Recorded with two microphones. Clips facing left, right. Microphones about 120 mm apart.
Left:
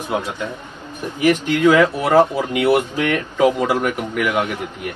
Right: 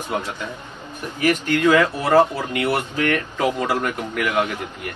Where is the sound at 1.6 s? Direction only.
15° left (ahead or behind).